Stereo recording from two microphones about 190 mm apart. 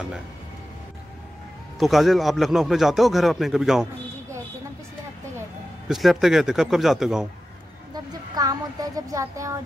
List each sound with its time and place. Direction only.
1.8 s speech: centre (ahead or behind)
5.9 s speech: centre (ahead or behind)
7.9 s speech: 20° right (ahead or behind)